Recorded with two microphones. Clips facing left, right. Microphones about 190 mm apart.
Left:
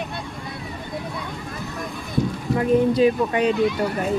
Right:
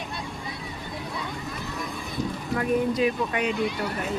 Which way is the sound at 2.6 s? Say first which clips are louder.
Left 6 dB; 30° left (ahead or behind).